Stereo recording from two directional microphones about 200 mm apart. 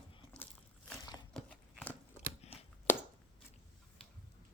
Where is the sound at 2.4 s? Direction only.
30° left (ahead or behind).